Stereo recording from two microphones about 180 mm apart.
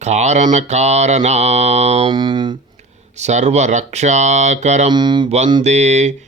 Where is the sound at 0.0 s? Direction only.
40° right (ahead or behind).